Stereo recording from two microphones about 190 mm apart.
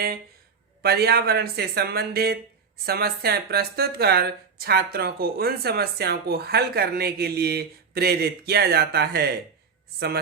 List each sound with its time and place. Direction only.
0.8 s speech: 55° right (ahead or behind)